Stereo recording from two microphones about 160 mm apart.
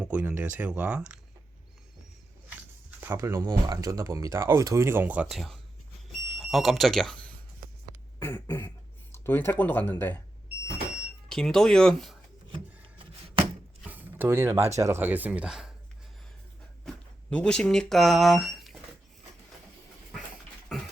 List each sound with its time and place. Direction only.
0.0 s speech: 10° right (ahead or behind)
2.5 s speech: 10° right (ahead or behind)
6.1 s smoke detector: centre (ahead or behind)
8.2 s speech: 15° left (ahead or behind)
11.3 s speech: 5° left (ahead or behind)
13.8 s a sound: 10° right (ahead or behind)
14.8 s speech: 15° right (ahead or behind)
16.8 s speech: 5° left (ahead or behind)